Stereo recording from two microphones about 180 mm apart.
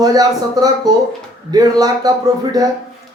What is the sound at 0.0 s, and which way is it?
Speech, 20° right (ahead or behind).